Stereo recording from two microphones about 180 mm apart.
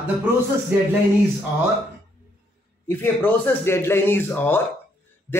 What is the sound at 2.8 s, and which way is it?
A man's voice, 10° left (ahead or behind).